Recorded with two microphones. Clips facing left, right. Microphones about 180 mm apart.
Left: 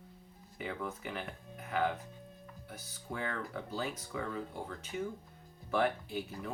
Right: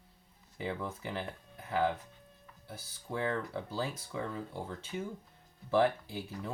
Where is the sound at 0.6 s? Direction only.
30° right (ahead or behind).